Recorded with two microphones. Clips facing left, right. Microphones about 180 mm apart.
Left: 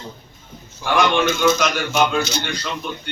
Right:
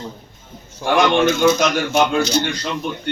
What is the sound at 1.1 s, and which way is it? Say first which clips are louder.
Speech: right 3 dB; 35° right (ahead or behind).